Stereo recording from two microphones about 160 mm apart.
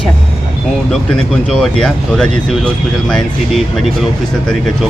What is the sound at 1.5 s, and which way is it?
Speech, 5° left (ahead or behind).